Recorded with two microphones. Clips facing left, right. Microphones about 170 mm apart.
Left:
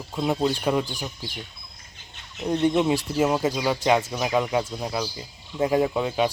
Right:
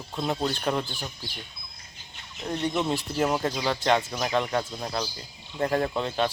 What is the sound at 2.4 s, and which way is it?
Speech, 20° left (ahead or behind).